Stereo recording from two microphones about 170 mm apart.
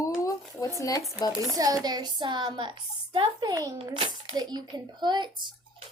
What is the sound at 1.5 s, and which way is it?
A woman's voice, 20° right (ahead or behind).